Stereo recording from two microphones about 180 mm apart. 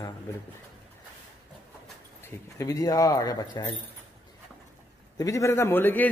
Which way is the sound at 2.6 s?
20° left (ahead or behind).